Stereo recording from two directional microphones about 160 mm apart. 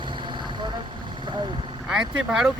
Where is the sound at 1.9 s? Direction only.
5° right (ahead or behind).